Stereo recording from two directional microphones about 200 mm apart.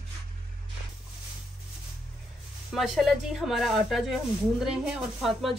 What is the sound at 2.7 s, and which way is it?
Speech, centre (ahead or behind).